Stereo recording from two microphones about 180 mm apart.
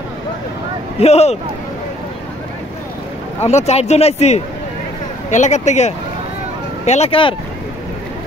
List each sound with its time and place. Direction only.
0.9 s speech: 35° left (ahead or behind)
3.4 s speech: 35° left (ahead or behind)